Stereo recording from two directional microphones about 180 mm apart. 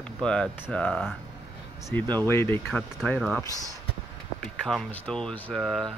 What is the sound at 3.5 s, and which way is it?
Speech, 20° right (ahead or behind).